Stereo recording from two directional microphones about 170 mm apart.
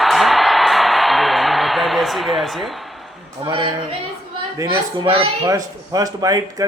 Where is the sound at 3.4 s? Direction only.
30° right (ahead or behind).